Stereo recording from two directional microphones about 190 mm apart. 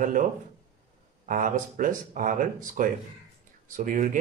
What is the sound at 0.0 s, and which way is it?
Speech, 45° right (ahead or behind).